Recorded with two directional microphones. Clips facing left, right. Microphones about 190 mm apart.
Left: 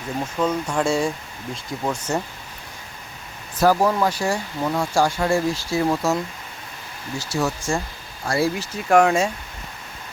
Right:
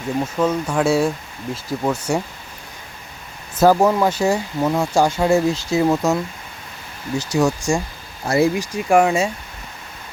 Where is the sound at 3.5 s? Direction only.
20° right (ahead or behind).